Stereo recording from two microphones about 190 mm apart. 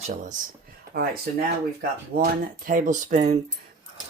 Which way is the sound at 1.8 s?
50° right (ahead or behind).